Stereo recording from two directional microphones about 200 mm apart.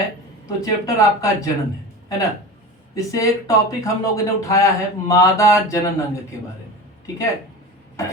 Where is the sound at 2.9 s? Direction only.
15° left (ahead or behind).